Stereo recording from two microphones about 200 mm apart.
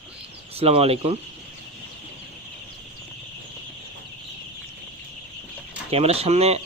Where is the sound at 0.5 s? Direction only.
30° right (ahead or behind).